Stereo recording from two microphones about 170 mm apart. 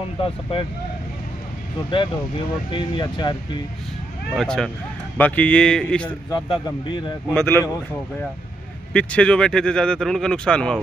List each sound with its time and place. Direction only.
0.2 s speech: 30° left (ahead or behind)
2.7 s a man's voice: 25° left (ahead or behind)
4.4 s a man's voice: 5° left (ahead or behind)
6.0 s a man's voice: 25° left (ahead or behind)
8.9 s speech: 5° left (ahead or behind)